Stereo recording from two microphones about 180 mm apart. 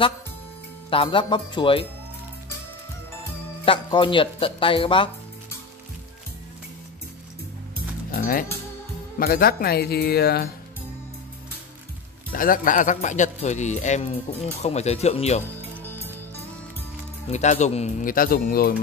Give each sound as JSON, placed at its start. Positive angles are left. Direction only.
{"t": 0.8, "sound": "speech", "side_deg": 30}
{"t": 3.6, "sound": "speech", "side_deg": 30}
{"t": 7.7, "sound": "music", "side_deg": 55}
{"t": 9.2, "sound": "speech", "side_deg": 55}
{"t": 12.3, "sound": "speech", "side_deg": 50}
{"t": 17.3, "sound": "speech", "side_deg": 40}